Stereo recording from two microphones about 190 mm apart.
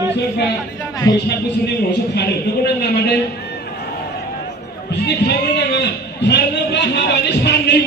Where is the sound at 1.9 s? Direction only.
60° left (ahead or behind).